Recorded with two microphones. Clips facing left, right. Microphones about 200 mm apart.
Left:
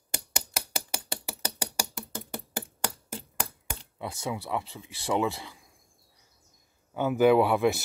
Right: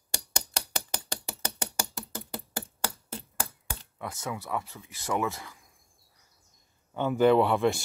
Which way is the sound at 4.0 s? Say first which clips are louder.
Left 2 dB; 15° left (ahead or behind).